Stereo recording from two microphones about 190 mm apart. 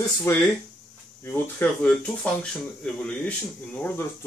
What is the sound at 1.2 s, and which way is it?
Speech, 10° left (ahead or behind).